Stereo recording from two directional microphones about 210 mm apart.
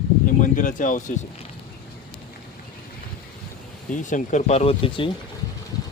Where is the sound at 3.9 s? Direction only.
35° left (ahead or behind).